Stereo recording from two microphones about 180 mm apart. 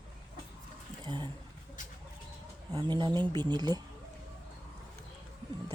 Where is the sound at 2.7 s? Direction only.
25° right (ahead or behind).